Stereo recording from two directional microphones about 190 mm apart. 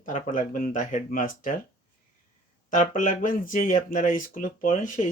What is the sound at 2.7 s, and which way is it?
Speech, 45° left (ahead or behind).